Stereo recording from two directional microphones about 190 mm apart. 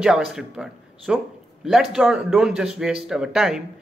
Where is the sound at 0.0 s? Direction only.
5° right (ahead or behind).